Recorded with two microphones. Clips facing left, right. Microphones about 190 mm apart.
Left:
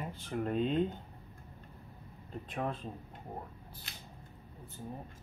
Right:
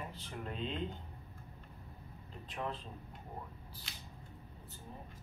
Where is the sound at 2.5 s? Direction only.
50° left (ahead or behind).